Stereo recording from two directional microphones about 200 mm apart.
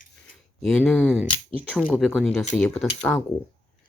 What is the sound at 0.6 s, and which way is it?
Speech, 5° left (ahead or behind).